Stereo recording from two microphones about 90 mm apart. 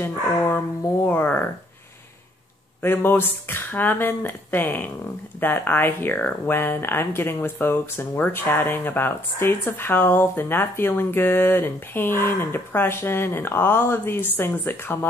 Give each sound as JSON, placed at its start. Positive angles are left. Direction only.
{"t": 0.0, "sound": "speech", "side_deg": 25}
{"t": 2.8, "sound": "speech", "side_deg": 25}